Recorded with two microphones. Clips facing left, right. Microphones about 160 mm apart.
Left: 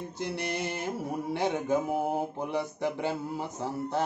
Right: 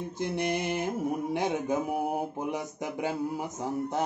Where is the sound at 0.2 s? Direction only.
15° right (ahead or behind).